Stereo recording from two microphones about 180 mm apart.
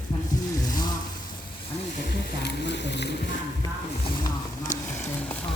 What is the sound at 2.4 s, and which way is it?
Speech, 75° left (ahead or behind).